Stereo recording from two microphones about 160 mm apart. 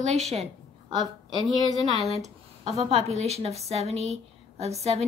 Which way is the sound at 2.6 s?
40° right (ahead or behind).